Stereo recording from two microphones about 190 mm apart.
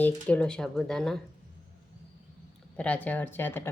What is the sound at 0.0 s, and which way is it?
A woman's voice, 5° left (ahead or behind).